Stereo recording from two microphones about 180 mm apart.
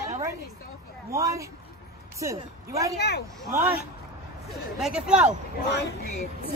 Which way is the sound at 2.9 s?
65° left (ahead or behind).